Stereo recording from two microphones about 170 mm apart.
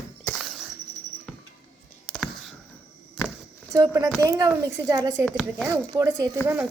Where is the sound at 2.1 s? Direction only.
Centre (ahead or behind).